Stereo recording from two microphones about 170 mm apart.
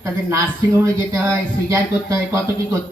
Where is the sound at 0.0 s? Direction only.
15° right (ahead or behind).